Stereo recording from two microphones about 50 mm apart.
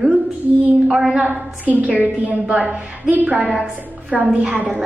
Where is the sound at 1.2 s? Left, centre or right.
Right.